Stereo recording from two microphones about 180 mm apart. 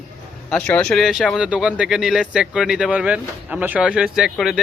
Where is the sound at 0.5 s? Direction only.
5° left (ahead or behind).